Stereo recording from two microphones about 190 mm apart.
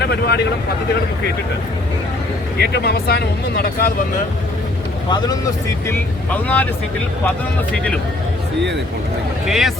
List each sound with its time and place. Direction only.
0.0 s speech: 60° left (ahead or behind)
2.6 s speech: 55° left (ahead or behind)
5.0 s speech: 25° left (ahead or behind)
5.9 s speech: 10° left (ahead or behind)
9.5 s speech: centre (ahead or behind)